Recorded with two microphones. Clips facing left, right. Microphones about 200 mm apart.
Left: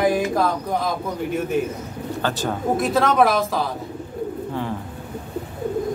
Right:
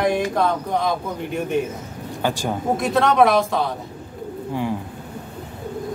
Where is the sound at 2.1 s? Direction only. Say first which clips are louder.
Right 1 dB; 15° right (ahead or behind).